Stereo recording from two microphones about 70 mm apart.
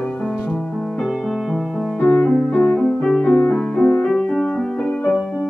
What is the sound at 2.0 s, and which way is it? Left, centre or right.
Music, left.